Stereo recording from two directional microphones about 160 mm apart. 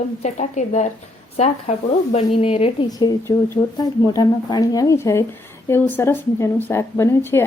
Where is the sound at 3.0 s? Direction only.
25° left (ahead or behind).